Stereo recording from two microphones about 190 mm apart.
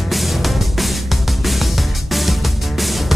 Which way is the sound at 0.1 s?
Centre (ahead or behind).